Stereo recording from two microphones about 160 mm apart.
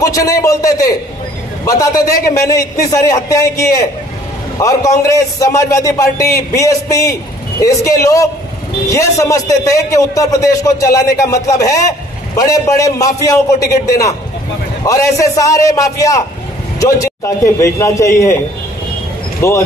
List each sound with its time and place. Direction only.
0.0 s a man's voice: 20° left (ahead or behind)
19.4 s speech: 15° left (ahead or behind)